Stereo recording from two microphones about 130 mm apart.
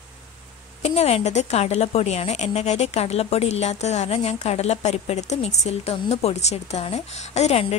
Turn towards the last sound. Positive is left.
turn(degrees=55)  # may be behind; listen again after turning